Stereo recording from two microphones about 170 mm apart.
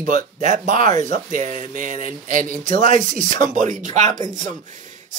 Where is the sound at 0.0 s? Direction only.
50° right (ahead or behind).